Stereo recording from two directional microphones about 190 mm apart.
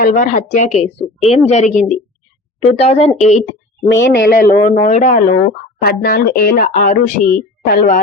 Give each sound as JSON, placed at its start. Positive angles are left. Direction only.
{"t": 0.0, "sound": "speech", "side_deg": 40}
{"t": 3.8, "sound": "speech", "side_deg": 70}
{"t": 4.5, "sound": "speech", "side_deg": 45}